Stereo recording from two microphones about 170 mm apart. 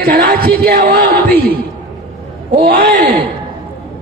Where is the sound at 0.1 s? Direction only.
60° right (ahead or behind).